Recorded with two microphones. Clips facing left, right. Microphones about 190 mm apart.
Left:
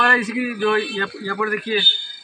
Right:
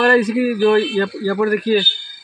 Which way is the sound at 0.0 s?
40° right (ahead or behind).